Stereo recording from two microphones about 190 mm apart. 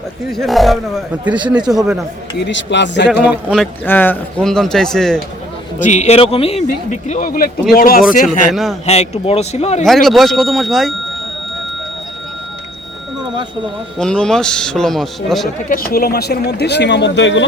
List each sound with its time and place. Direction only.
0.3 s a man's voice: centre (ahead or behind)
2.4 s speech: 70° left (ahead or behind)
3.2 s a man's voice: 5° right (ahead or behind)
3.8 s a man's voice: 10° left (ahead or behind)
5.8 s speech: 40° left (ahead or behind)
7.1 s a man's voice: 45° left (ahead or behind)
8.9 s speech: 35° left (ahead or behind)
9.8 s a man's voice: centre (ahead or behind)
14.0 s a man's voice: 5° left (ahead or behind)
15.7 s speech: 50° left (ahead or behind); by 17.4 s 70° left (ahead or behind)